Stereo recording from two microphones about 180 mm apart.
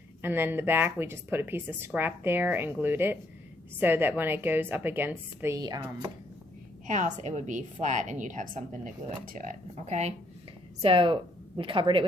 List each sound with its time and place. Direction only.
0.2 s speech: 10° right (ahead or behind)
6.8 s a woman's voice: 45° right (ahead or behind); by 12.0 s 30° right (ahead or behind)